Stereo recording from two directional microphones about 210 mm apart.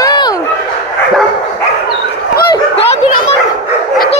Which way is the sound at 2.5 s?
25° left (ahead or behind).